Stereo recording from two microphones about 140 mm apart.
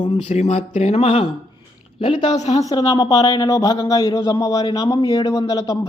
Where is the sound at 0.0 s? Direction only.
40° left (ahead or behind).